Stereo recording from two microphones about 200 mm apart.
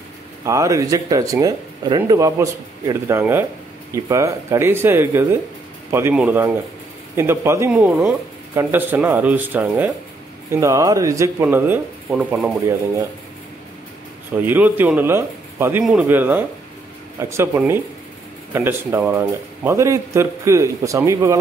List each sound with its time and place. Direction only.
0.5 s speech: 15° right (ahead or behind)
14.4 s speech: 10° right (ahead or behind)